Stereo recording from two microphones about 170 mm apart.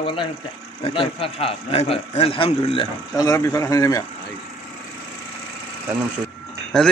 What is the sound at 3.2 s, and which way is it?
Speech, 20° left (ahead or behind).